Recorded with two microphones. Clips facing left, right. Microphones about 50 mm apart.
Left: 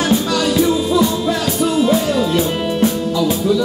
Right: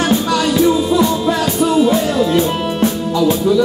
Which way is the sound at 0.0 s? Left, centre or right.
Centre.